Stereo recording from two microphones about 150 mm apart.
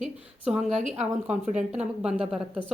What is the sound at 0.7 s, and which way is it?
Speech, 50° right (ahead or behind).